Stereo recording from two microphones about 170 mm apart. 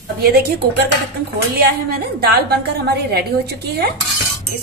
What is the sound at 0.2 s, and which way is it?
A woman's voice, 65° right (ahead or behind).